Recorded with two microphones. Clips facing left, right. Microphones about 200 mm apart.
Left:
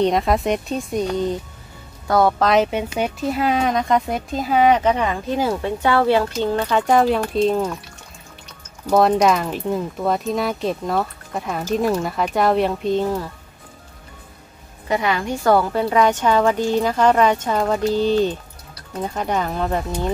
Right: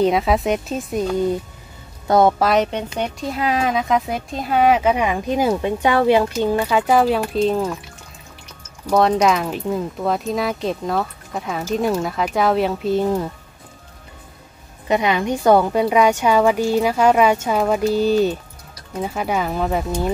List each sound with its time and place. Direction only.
0.0 s speech: 5° right (ahead or behind)
2.0 s speech: 20° right (ahead or behind)
2.3 s speech: 5° right (ahead or behind)
8.9 s speech: centre (ahead or behind)
14.9 s a woman's voice: 20° right (ahead or behind)